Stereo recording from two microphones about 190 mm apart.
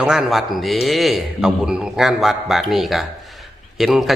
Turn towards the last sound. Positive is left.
turn(degrees=0)  # may be behind; listen again after turning